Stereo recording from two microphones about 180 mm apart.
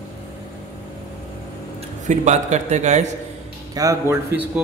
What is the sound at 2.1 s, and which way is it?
Speech, 40° right (ahead or behind).